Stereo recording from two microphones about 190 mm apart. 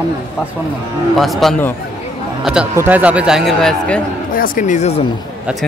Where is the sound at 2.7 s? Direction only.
10° right (ahead or behind).